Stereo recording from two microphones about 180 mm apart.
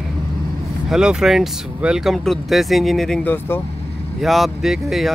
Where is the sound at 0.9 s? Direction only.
5° right (ahead or behind).